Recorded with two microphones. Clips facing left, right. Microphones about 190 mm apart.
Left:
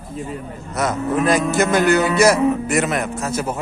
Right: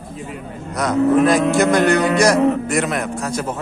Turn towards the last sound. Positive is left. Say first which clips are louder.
# even
turn(degrees=5)  # may be behind; listen again after turning